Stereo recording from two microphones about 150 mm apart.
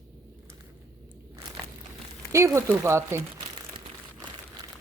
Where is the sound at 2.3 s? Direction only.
20° right (ahead or behind).